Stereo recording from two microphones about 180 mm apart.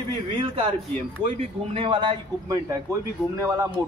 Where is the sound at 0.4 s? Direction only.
30° right (ahead or behind).